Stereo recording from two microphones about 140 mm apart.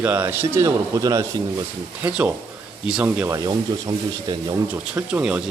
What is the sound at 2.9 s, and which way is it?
Speech, 10° right (ahead or behind).